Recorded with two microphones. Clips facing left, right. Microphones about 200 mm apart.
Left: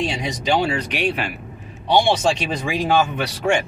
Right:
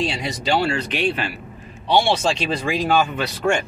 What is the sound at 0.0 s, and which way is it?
Speech, 15° left (ahead or behind).